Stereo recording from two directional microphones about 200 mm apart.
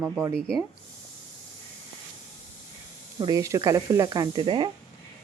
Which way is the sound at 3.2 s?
20° right (ahead or behind).